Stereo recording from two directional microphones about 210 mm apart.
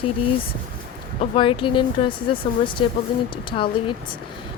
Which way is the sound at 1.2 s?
25° left (ahead or behind).